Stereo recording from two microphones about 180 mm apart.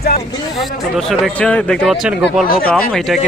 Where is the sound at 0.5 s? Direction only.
Centre (ahead or behind).